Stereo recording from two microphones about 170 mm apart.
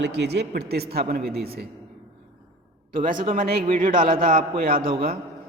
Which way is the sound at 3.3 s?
60° right (ahead or behind).